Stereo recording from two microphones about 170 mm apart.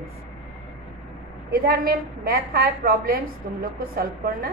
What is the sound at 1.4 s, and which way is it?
A woman's voice, 60° right (ahead or behind).